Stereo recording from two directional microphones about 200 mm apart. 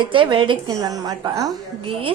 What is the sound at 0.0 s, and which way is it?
A woman's voice, 25° right (ahead or behind).